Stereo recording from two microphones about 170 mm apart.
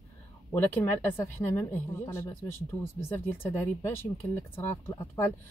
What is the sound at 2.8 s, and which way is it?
A woman's voice, 15° left (ahead or behind).